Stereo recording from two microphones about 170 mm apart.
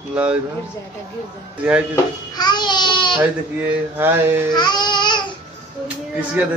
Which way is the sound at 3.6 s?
10° right (ahead or behind).